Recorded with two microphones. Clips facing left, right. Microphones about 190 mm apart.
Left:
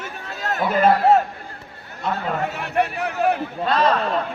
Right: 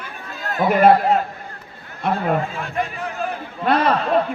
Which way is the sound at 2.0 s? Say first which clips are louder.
Right 4 dB; 65° right (ahead or behind).